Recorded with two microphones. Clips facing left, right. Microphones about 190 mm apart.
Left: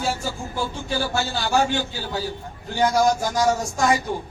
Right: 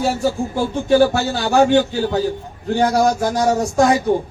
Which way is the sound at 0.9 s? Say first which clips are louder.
Right 14 dB; 50° right (ahead or behind).